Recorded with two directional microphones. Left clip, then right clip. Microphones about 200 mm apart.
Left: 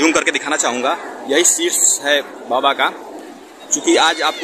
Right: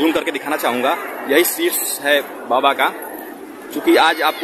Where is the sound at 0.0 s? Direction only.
5° right (ahead or behind).